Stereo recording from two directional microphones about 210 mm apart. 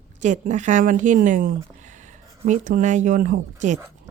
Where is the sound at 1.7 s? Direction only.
35° right (ahead or behind).